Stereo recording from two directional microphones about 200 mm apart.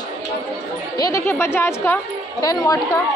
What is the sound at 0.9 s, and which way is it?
Speech, 15° left (ahead or behind).